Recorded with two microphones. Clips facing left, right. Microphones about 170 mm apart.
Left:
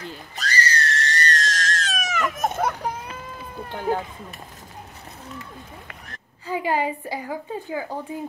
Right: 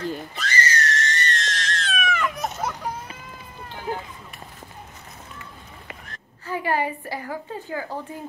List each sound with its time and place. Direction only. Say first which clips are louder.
0.4 s screaming: left 2 dB; 35° left (ahead or behind); by 2.7 s 50° left (ahead or behind)
3.6 s run: left 6 dB; 55° left (ahead or behind)
6.4 s a woman's voice: left 1 dB; 15° left (ahead or behind)